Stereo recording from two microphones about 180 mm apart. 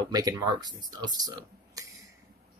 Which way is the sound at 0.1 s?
20° right (ahead or behind).